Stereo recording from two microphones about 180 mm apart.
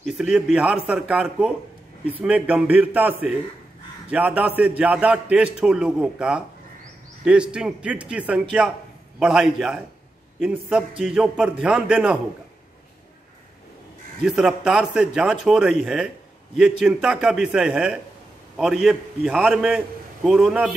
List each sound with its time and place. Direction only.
0.0 s a man's voice: 5° right (ahead or behind)
14.2 s a man's voice: 5° right (ahead or behind)